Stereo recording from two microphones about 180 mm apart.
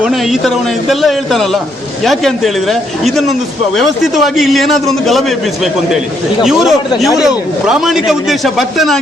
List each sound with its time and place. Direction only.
0.0 s a man's voice: centre (ahead or behind)
6.4 s a man's voice: centre (ahead or behind)